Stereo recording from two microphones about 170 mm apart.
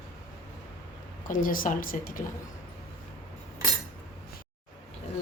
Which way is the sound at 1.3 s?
55° left (ahead or behind).